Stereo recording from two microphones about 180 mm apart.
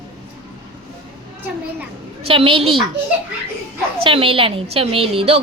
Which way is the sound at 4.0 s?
30° right (ahead or behind).